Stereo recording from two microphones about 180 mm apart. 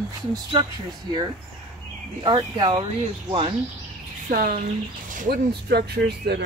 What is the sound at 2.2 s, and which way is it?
Speech, 30° right (ahead or behind).